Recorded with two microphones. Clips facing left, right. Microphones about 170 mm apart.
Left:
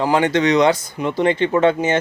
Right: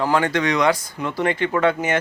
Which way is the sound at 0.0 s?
20° left (ahead or behind).